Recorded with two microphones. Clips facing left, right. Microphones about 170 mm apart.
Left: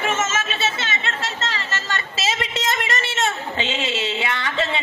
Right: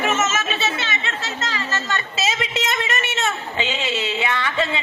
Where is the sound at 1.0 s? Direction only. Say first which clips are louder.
Left 1 dB; 30° left (ahead or behind).